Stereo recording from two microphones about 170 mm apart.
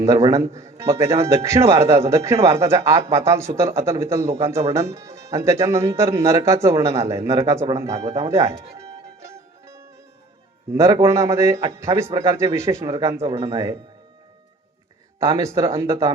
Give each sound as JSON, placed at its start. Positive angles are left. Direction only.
{"t": 0.0, "sound": "speech", "side_deg": -20}
{"t": 7.9, "sound": "speech", "side_deg": -35}
{"t": 8.2, "sound": "music", "side_deg": -20}
{"t": 10.8, "sound": "speech", "side_deg": -20}
{"t": 15.2, "sound": "speech", "side_deg": -15}